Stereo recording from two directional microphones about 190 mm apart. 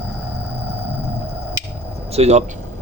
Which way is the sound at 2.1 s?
35° right (ahead or behind).